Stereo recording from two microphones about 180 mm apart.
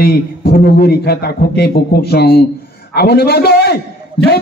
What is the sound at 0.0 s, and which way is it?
A man's voice, 60° left (ahead or behind).